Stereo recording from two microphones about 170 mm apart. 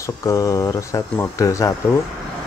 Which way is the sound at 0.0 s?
20° left (ahead or behind).